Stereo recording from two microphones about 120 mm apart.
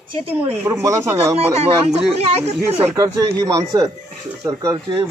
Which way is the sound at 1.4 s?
60° right (ahead or behind).